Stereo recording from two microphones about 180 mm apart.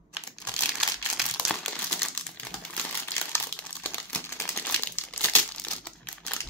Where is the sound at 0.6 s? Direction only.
Centre (ahead or behind).